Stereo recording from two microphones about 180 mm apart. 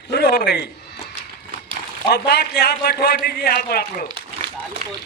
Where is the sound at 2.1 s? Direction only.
65° left (ahead or behind).